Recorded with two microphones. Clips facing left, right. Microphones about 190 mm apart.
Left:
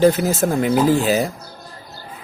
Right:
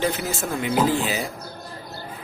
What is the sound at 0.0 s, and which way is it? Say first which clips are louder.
Speech: left 10 dB; 45° left (ahead or behind).